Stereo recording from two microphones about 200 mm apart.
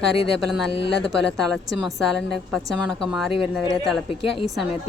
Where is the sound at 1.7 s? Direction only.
Centre (ahead or behind).